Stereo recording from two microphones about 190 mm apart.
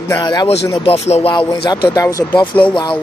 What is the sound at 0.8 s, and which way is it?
Speech, 35° left (ahead or behind).